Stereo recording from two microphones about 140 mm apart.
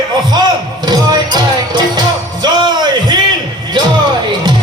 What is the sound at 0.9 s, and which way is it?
Music, 30° right (ahead or behind).